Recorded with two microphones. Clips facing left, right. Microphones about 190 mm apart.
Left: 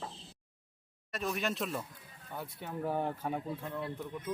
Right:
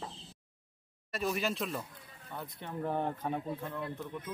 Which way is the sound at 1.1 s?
Centre (ahead or behind).